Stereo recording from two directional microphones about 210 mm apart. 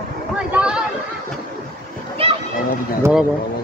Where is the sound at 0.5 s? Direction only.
5° right (ahead or behind).